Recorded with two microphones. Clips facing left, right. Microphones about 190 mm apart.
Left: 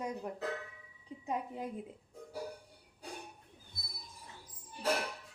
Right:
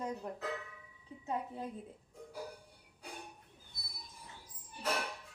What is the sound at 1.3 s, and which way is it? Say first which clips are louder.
Speech: left 1 dB; 15° left (ahead or behind).